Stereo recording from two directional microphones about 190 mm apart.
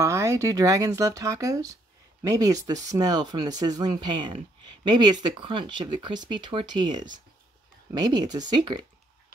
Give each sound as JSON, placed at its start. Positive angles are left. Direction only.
{"t": 0.0, "sound": "speech", "side_deg": -15}